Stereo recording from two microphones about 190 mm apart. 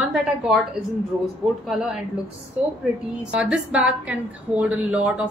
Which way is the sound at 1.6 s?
Centre (ahead or behind).